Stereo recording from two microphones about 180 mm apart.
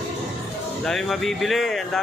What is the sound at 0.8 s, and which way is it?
Speech, centre (ahead or behind).